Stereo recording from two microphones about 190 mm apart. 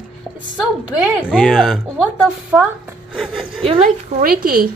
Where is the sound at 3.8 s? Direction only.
45° right (ahead or behind).